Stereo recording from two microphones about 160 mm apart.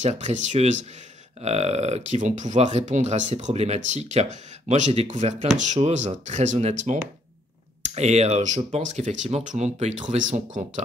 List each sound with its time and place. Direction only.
0.0 s speech: 50° right (ahead or behind)